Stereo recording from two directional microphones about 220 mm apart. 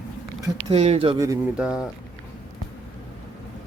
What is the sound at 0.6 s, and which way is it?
Speech, 30° right (ahead or behind).